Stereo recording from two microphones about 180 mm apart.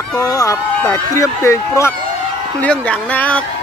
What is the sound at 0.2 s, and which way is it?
Speech, 15° left (ahead or behind).